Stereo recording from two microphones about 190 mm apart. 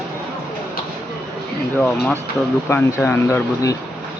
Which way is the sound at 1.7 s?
10° left (ahead or behind).